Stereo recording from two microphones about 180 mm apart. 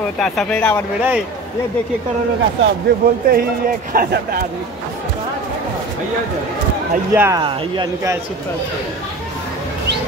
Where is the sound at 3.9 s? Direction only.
55° right (ahead or behind).